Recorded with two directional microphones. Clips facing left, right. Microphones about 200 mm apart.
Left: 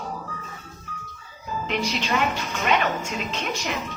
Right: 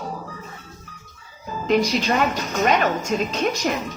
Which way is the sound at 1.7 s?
40° right (ahead or behind).